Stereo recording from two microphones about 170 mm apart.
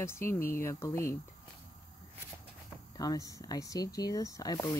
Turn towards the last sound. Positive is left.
turn(degrees=25)  # may be behind; listen again after turning